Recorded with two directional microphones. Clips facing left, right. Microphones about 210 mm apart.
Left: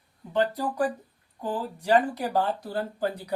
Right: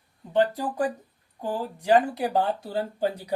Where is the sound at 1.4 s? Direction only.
15° right (ahead or behind).